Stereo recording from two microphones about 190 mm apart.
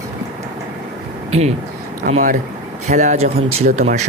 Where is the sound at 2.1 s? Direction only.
40° right (ahead or behind).